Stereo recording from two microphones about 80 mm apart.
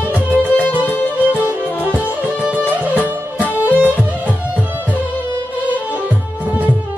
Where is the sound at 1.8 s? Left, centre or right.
Right.